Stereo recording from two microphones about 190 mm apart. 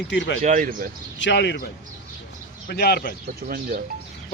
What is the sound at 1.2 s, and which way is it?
Speech, 65° left (ahead or behind).